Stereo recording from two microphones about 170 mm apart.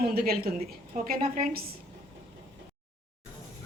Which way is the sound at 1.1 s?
50° right (ahead or behind).